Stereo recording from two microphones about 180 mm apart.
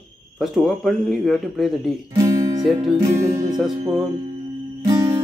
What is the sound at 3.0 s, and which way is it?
Music, 20° right (ahead or behind).